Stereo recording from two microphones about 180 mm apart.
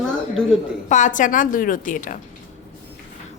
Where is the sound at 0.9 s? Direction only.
45° left (ahead or behind).